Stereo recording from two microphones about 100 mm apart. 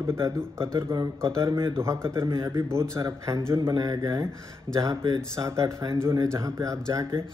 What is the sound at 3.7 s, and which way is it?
A man's voice, 40° right (ahead or behind).